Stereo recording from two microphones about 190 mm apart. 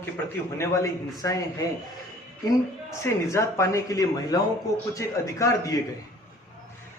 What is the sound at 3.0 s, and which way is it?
Speech, 15° left (ahead or behind).